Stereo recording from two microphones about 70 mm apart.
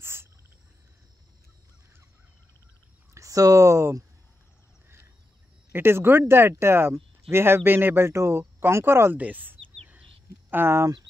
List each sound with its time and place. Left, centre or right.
0.0 s a sound: right
3.2 s speech: right
5.7 s speech: right
9.1 s speech: right